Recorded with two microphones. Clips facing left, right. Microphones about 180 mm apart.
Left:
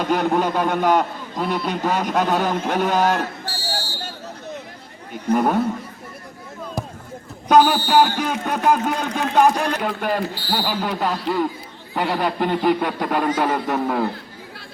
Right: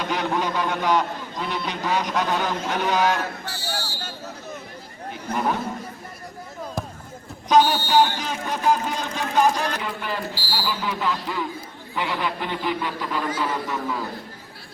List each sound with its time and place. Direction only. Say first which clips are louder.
0.0 s a man's voice: left 5 dB; 50° left (ahead or behind)
3.4 s a sound: left 2 dB; 30° left (ahead or behind)
5.3 s a man's voice: left 7 dB; 55° left (ahead or behind)
7.4 s a man's voice: left 3 dB; 60° left (ahead or behind)